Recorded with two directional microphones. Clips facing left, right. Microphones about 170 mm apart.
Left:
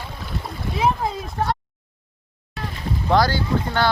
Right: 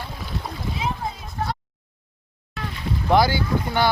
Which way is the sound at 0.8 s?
80° left.